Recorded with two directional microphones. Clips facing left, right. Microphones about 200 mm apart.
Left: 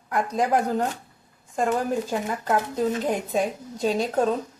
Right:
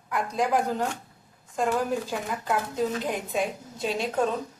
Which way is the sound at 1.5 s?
45° left (ahead or behind).